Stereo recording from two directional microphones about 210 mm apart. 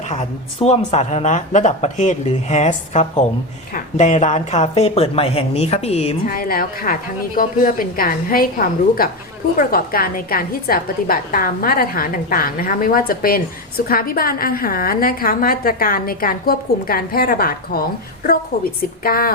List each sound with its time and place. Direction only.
0.0 s speech: 30° left (ahead or behind)
6.2 s a woman's voice: 45° left (ahead or behind)